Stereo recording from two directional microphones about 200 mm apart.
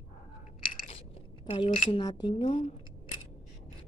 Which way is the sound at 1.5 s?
25° left (ahead or behind).